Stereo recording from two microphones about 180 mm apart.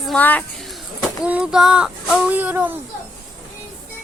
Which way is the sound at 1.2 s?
5° right (ahead or behind).